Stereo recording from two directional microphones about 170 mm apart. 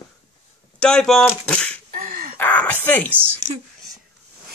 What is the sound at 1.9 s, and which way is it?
Gasp, 55° right (ahead or behind).